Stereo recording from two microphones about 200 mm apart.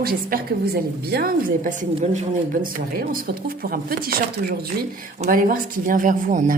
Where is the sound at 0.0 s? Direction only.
50° right (ahead or behind).